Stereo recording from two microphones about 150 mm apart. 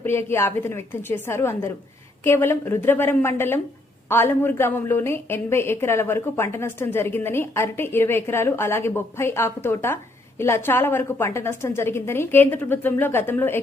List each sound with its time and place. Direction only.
0.0 s a woman's voice: 15° left (ahead or behind)